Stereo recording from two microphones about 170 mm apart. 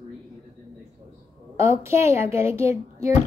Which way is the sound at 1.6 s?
15° right (ahead or behind).